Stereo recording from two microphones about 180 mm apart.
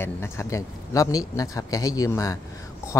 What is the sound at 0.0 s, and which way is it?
Speech, 15° left (ahead or behind).